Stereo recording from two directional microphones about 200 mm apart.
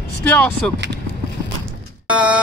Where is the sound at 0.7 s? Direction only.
60° right (ahead or behind).